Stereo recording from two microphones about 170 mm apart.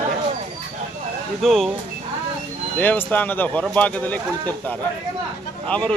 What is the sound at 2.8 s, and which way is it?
A man's voice, 10° left (ahead or behind).